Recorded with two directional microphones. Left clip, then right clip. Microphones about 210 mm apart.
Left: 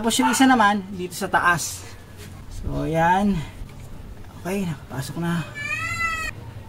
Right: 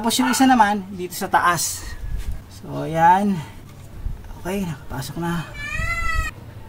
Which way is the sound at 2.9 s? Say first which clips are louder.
Right 4 dB; 40° right (ahead or behind).